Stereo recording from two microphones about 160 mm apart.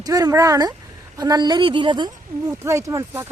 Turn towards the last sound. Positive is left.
turn(degrees=-20)  # may be behind; listen again after turning